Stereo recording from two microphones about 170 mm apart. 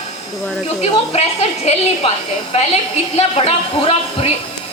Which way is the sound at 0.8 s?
40° left (ahead or behind).